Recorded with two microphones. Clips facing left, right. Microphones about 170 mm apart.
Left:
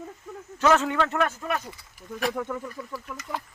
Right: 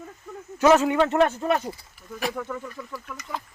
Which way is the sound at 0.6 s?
15° right (ahead or behind).